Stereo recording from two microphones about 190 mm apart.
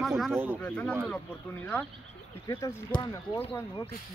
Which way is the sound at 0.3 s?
10° right (ahead or behind).